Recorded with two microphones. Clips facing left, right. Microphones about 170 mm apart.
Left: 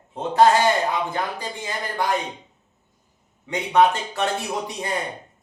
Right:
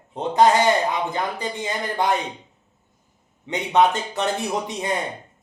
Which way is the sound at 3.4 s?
20° right (ahead or behind).